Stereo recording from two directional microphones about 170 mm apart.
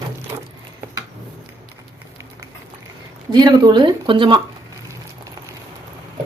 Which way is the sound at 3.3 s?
25° right (ahead or behind).